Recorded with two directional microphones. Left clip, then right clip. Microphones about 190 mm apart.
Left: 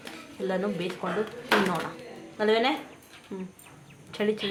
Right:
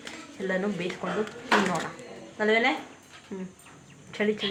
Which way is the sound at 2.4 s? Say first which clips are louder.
Even; 10° left (ahead or behind).